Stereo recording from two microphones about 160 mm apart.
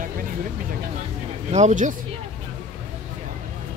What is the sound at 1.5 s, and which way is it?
Speech, 45° right (ahead or behind).